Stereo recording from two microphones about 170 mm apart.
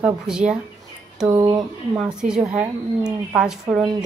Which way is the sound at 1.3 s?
25° right (ahead or behind).